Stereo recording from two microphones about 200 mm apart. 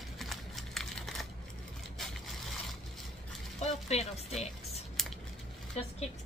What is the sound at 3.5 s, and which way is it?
A woman's voice, 35° left (ahead or behind).